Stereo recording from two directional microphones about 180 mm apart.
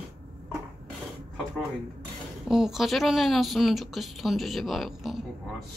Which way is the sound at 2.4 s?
Centre (ahead or behind).